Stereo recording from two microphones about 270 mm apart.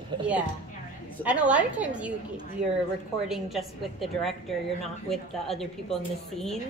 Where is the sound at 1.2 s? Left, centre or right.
Centre.